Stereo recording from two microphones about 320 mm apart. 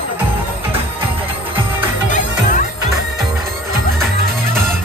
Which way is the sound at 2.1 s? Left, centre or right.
Left.